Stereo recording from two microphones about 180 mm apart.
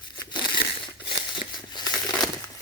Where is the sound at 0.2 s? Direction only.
25° left (ahead or behind).